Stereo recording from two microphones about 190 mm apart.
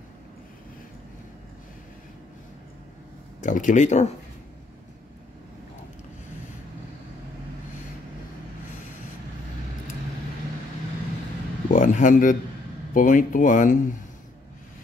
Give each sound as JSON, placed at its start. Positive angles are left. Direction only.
{"t": 3.3, "sound": "speech", "side_deg": 40}
{"t": 11.7, "sound": "a sound", "side_deg": 45}
{"t": 12.9, "sound": "speech", "side_deg": 45}